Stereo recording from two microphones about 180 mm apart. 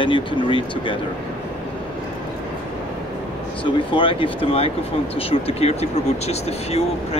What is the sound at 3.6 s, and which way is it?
Speech, 30° left (ahead or behind).